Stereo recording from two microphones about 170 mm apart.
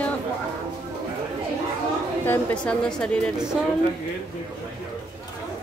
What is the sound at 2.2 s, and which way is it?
Speech, 5° left (ahead or behind).